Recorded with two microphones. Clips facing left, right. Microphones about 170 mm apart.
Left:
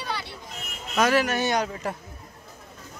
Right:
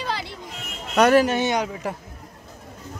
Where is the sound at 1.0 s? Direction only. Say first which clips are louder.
Right 5 dB; 70° right (ahead or behind).